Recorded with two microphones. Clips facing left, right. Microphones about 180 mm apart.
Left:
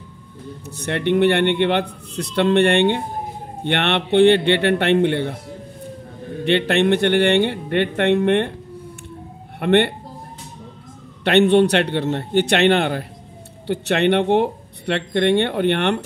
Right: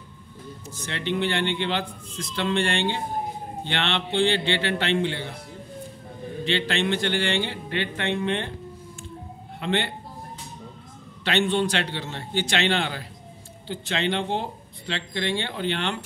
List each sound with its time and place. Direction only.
0.7 s speech: 65° left (ahead or behind)
6.4 s speech: 60° left (ahead or behind)
9.6 s speech: 65° left (ahead or behind)
11.2 s speech: 60° left (ahead or behind)
13.7 s speech: 65° left (ahead or behind)